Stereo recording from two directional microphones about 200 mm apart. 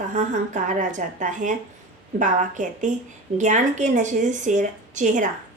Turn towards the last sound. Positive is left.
turn(degrees=-40)  # may be behind; listen again after turning